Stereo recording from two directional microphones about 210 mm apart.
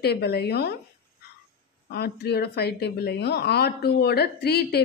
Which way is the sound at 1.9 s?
50° left (ahead or behind).